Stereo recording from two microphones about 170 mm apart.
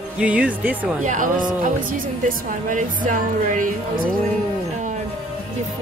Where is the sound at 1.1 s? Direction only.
50° right (ahead or behind).